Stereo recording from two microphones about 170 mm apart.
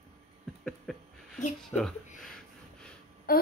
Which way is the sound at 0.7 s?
5° left (ahead or behind).